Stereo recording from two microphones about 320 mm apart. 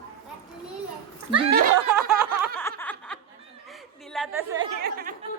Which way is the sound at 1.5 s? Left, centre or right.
Right.